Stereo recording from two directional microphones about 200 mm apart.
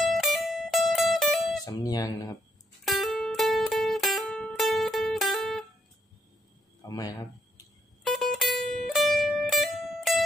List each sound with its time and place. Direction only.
0.0 s music: centre (ahead or behind)
1.6 s music: 20° left (ahead or behind)
2.8 s music: centre (ahead or behind)
6.8 s a sound: 20° left (ahead or behind)
8.0 s music: centre (ahead or behind)